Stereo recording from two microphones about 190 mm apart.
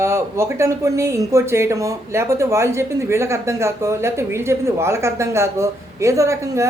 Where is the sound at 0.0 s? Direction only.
15° right (ahead or behind).